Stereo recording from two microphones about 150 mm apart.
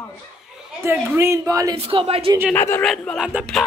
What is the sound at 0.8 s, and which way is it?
Speech, 15° right (ahead or behind).